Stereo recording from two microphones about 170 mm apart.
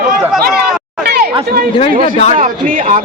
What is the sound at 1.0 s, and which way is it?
Chatter, 70° right (ahead or behind).